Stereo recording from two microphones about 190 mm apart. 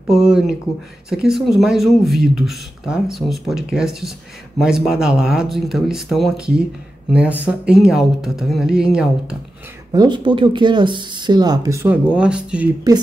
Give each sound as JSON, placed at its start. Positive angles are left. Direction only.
{"t": 0.1, "sound": "speech", "side_deg": -5}
{"t": 9.9, "sound": "speech", "side_deg": -25}
{"t": 12.9, "sound": "speech", "side_deg": -20}